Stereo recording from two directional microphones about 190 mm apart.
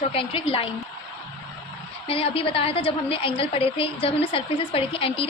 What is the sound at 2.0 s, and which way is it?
A woman's voice, 30° left (ahead or behind).